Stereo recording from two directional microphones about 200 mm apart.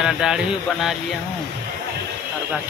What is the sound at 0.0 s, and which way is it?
Speech, 5° right (ahead or behind).